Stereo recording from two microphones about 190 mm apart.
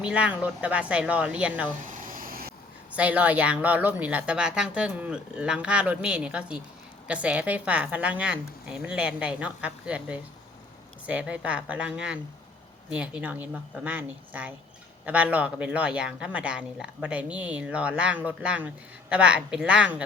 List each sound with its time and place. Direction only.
0.0 s speech: 5° right (ahead or behind)
1.8 s air conditioning: 45° right (ahead or behind)
2.9 s speech: 5° right (ahead or behind)